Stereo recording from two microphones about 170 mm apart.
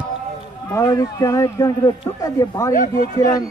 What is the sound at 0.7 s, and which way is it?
A man's voice, 20° left (ahead or behind).